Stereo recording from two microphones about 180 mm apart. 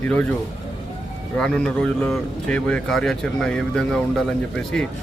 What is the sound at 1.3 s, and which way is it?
A man's voice, 5° left (ahead or behind).